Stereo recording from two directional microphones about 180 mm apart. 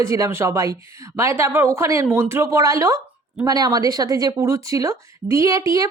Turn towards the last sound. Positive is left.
turn(degrees=-15)  # may be behind; listen again after turning